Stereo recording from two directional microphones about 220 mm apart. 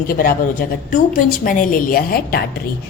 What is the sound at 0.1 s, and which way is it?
A woman's voice, 40° left (ahead or behind).